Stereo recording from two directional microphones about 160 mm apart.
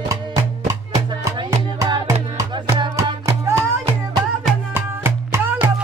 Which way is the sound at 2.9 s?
15° right (ahead or behind).